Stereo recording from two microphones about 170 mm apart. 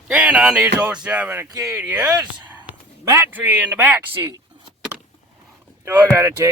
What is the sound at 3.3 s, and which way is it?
Speech, 10° right (ahead or behind).